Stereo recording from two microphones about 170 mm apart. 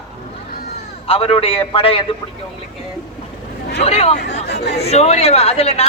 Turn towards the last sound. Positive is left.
turn(degrees=35)  # may be behind; listen again after turning